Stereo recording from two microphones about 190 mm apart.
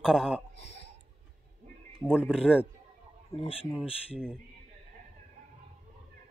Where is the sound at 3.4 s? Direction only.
30° left (ahead or behind).